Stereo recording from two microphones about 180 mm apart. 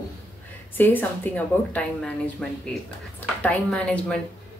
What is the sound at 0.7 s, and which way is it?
A man's voice, 10° left (ahead or behind).